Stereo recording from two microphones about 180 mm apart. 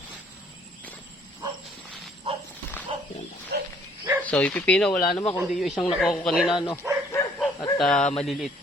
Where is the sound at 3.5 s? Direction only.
60° right (ahead or behind).